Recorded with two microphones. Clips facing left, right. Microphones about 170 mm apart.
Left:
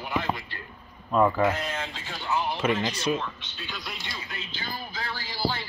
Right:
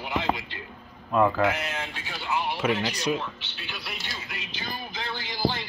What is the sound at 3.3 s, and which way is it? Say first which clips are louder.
Speech: left 1 dB; 70° right (ahead or behind).